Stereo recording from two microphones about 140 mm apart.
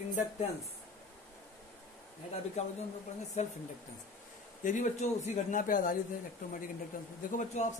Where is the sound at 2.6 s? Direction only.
50° left (ahead or behind).